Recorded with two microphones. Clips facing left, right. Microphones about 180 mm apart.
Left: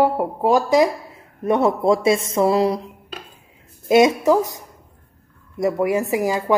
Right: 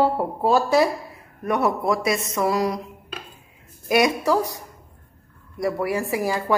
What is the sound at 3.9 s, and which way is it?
Speech, 20° left (ahead or behind).